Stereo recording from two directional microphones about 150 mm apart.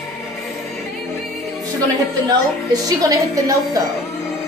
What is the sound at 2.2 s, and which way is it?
A woman's voice, 25° right (ahead or behind).